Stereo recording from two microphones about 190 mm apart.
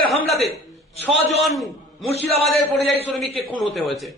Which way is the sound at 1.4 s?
Centre (ahead or behind).